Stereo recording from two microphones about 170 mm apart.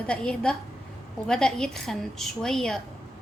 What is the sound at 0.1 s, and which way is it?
Speech, 5° left (ahead or behind).